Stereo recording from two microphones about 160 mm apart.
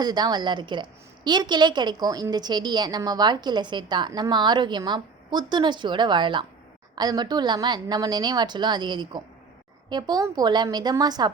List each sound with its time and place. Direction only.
0.0 s a woman's voice: 25° right (ahead or behind)